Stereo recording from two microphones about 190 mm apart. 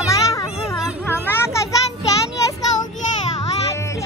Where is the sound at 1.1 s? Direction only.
10° left (ahead or behind).